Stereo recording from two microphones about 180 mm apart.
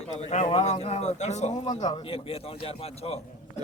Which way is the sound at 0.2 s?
40° left (ahead or behind).